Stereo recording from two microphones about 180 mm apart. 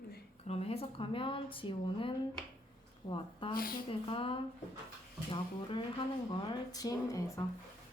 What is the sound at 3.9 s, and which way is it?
A woman's voice, 30° left (ahead or behind).